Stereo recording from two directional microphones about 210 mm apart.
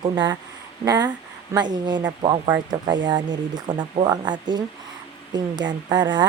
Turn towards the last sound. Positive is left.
turn(degrees=-20)  # may be behind; listen again after turning